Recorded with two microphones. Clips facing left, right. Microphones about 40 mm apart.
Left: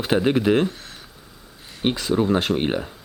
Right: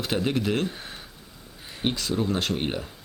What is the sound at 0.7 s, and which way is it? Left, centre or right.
Speech, centre.